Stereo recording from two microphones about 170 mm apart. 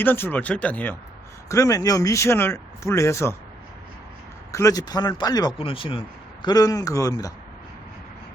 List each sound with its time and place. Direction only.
0.0 s speech: 10° left (ahead or behind)
1.5 s speech: 20° left (ahead or behind)
4.5 s speech: 20° left (ahead or behind)